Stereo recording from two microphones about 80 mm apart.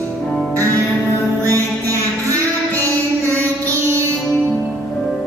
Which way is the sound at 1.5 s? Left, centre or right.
Right.